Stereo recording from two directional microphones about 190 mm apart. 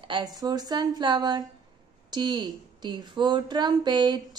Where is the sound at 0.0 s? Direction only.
25° right (ahead or behind).